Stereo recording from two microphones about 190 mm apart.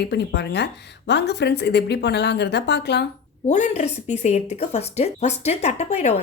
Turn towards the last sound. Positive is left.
turn(degrees=35)  # may be behind; listen again after turning